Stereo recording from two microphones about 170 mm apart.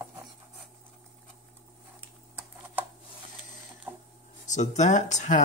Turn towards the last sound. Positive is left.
turn(degrees=45)  # may be behind; listen again after turning